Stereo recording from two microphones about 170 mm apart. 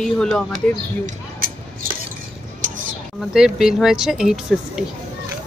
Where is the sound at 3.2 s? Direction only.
5° right (ahead or behind).